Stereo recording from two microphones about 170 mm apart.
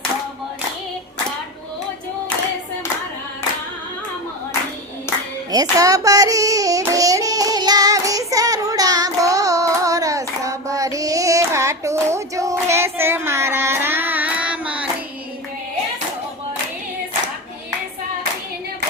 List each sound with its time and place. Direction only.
5.5 s child singing: 20° right (ahead or behind)